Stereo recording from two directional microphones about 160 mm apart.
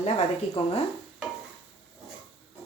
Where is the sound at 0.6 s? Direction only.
35° left (ahead or behind).